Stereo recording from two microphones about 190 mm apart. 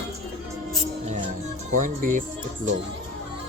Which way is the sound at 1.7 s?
45° right (ahead or behind).